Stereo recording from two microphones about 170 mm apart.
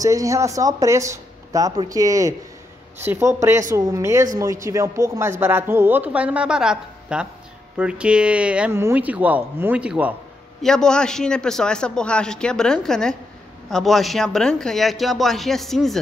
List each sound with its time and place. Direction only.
0.0 s speech: 20° right (ahead or behind)
10.6 s a man's voice: 5° left (ahead or behind)